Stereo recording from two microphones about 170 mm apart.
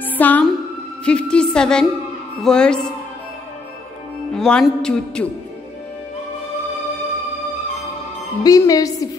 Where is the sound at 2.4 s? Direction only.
5° left (ahead or behind).